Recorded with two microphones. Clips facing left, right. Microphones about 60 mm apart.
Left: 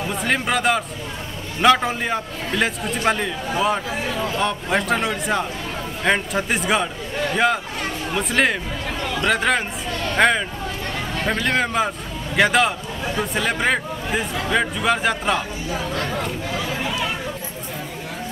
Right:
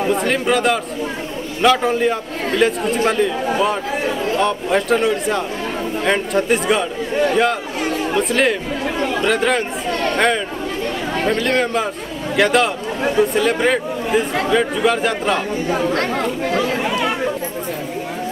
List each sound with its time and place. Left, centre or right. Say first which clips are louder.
0.1 s speech: right 3 dB; centre
8.1 s speech: right 2 dB; centre
15.7 s speech: right 6 dB; right